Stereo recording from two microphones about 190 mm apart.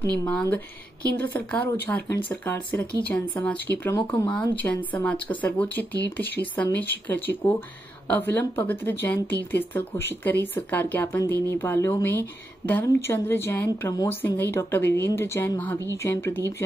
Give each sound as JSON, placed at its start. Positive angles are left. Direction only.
{"t": 0.2, "sound": "speech", "side_deg": 15}